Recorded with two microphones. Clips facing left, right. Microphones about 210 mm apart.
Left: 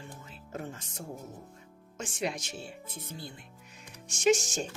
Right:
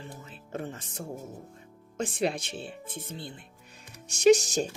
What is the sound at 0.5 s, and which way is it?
Speech, 30° right (ahead or behind).